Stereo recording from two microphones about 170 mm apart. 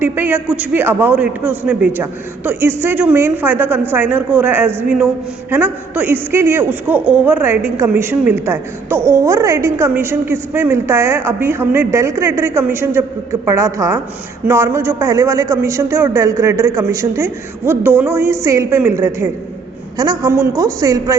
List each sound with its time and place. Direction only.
0.0 s a man's voice: 10° right (ahead or behind)